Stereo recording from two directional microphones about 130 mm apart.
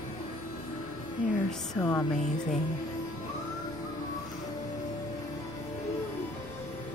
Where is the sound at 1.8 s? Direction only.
20° left (ahead or behind).